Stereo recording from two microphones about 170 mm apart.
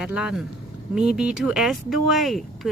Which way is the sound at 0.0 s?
5° right (ahead or behind).